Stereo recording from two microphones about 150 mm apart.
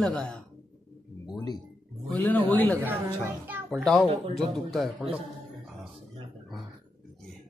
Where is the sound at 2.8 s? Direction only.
15° right (ahead or behind).